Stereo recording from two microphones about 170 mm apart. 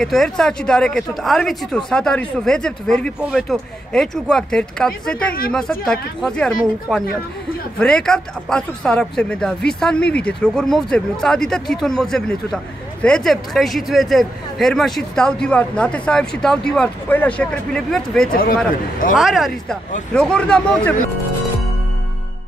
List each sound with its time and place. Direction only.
0.0 s speech: centre (ahead or behind)
18.3 s speech: 60° left (ahead or behind)
19.1 s speech: centre (ahead or behind)